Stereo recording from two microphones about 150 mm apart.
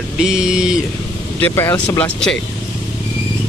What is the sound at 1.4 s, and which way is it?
Speech, 20° left (ahead or behind).